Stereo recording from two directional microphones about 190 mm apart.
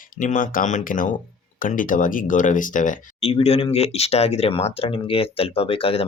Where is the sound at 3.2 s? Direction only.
30° left (ahead or behind).